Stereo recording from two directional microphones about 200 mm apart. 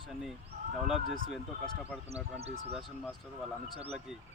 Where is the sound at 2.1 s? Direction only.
30° right (ahead or behind).